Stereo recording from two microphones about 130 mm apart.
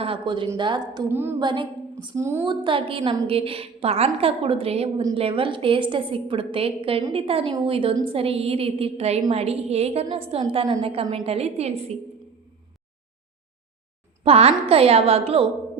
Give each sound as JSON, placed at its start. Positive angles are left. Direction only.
{"t": 0.0, "sound": "a woman's voice", "side_deg": -40}
{"t": 1.1, "sound": "a sound", "side_deg": -15}
{"t": 1.4, "sound": "a sound", "side_deg": -35}
{"t": 2.1, "sound": "a woman's voice", "side_deg": -20}
{"t": 2.5, "sound": "a woman's voice", "side_deg": -40}
{"t": 14.3, "sound": "a woman's voice", "side_deg": -50}